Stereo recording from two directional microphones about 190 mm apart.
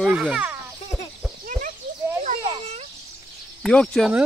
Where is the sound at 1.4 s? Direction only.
45° right (ahead or behind).